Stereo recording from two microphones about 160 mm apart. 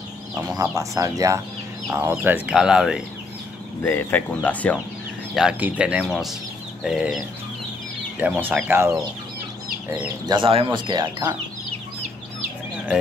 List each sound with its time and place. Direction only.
0.3 s speech: 20° right (ahead or behind); by 3.0 s 5° right (ahead or behind)
3.8 s speech: 10° left (ahead or behind)
5.3 s speech: 5° right (ahead or behind)
10.2 s speech: 30° right (ahead or behind)